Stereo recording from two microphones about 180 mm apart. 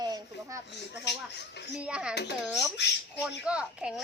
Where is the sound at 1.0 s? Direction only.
70° left (ahead or behind).